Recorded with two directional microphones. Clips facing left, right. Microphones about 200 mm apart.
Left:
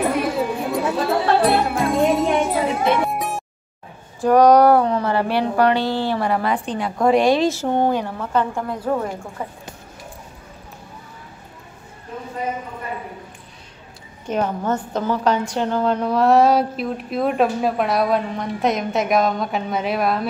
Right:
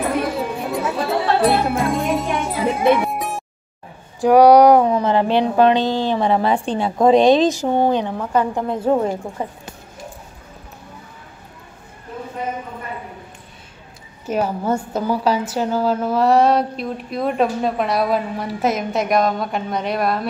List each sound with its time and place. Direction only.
0.1 s music: centre (ahead or behind)
4.2 s a woman's voice: 10° right (ahead or behind)
8.6 s speech: 25° right (ahead or behind)
14.2 s a woman's voice: 10° right (ahead or behind)